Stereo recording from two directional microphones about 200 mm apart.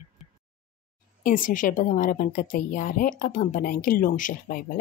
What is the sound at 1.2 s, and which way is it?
Speech, 40° left (ahead or behind).